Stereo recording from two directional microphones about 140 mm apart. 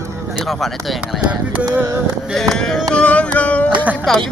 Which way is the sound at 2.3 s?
5° left (ahead or behind).